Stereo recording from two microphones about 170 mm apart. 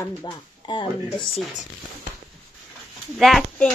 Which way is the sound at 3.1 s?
Centre (ahead or behind).